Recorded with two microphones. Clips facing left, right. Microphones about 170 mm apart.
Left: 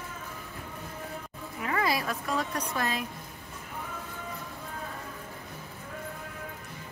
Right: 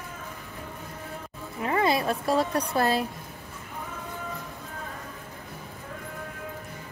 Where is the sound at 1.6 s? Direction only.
25° right (ahead or behind).